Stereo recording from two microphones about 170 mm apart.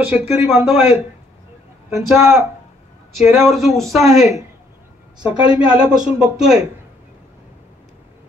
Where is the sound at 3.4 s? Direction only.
Centre (ahead or behind).